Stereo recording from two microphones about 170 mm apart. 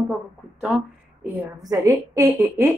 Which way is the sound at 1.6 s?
20° right (ahead or behind).